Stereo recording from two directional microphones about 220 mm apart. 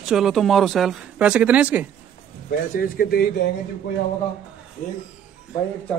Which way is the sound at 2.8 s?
45° left (ahead or behind).